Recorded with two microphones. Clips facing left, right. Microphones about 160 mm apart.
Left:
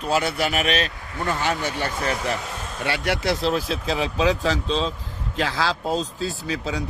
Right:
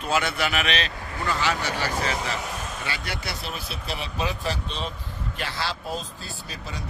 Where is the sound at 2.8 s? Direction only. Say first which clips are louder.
Left 14 dB; 75° left (ahead or behind).